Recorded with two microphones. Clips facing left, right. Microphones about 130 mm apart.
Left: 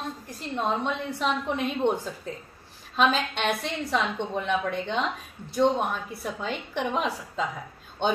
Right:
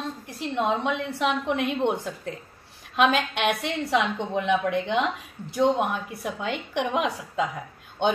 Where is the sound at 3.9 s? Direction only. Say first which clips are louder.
Right 3 dB; 15° right (ahead or behind).